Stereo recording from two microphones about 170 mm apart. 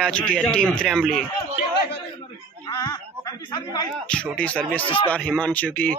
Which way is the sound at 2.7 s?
20° left (ahead or behind).